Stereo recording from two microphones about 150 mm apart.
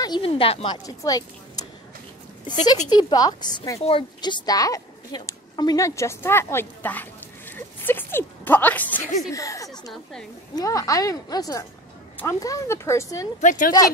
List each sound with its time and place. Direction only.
0.0 s speech: 35° left (ahead or behind)
0.8 s a woman's voice: 25° left (ahead or behind)
2.4 s a woman's voice: 25° left (ahead or behind); by 9.0 s 10° left (ahead or behind)
9.3 s a woman's voice: 20° left (ahead or behind)
9.7 s a woman's voice: 5° left (ahead or behind)
10.5 s a woman's voice: 25° left (ahead or behind)
13.4 s a woman's voice: 60° left (ahead or behind)